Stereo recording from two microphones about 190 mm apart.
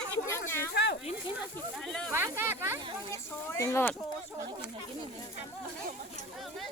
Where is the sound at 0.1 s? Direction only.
15° left (ahead or behind).